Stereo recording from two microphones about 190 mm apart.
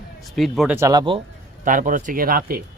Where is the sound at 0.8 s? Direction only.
20° right (ahead or behind).